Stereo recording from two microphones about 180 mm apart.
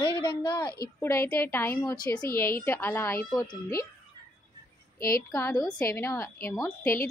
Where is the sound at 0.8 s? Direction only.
15° left (ahead or behind).